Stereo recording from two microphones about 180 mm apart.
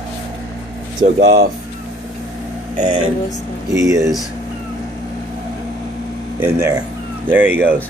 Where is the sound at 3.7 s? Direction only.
20° right (ahead or behind).